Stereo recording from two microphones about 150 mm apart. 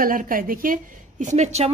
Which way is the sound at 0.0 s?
70° right (ahead or behind).